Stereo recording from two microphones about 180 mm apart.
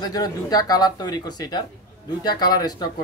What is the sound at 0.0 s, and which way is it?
Speech, 20° left (ahead or behind).